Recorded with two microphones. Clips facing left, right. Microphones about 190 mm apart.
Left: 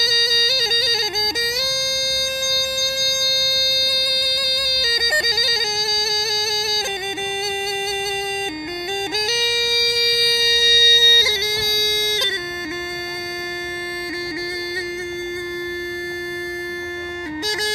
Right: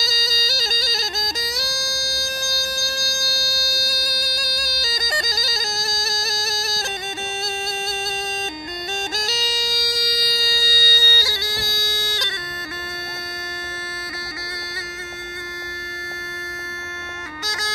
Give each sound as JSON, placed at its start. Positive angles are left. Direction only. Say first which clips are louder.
{"t": 0.0, "sound": "bagpipes", "louder": "left 4 dB", "side_deg": 20}
{"t": 9.1, "sound": "music", "louder": "left 4 dB", "side_deg": 20}